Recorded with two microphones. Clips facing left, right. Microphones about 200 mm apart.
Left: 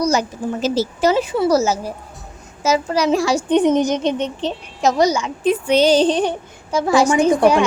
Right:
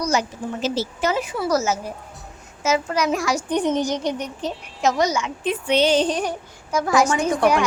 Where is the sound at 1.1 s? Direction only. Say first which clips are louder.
Left 5 dB; 25° left (ahead or behind).